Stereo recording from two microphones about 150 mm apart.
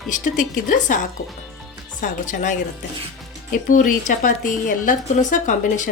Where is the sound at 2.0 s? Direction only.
55° left (ahead or behind).